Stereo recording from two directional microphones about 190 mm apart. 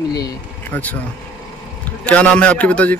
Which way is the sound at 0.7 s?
10° left (ahead or behind).